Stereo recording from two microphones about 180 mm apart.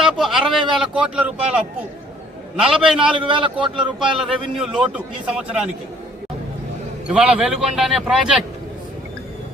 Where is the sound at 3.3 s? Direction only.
30° right (ahead or behind).